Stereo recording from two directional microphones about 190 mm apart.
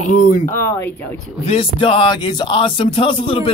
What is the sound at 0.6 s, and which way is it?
Speech, 10° left (ahead or behind).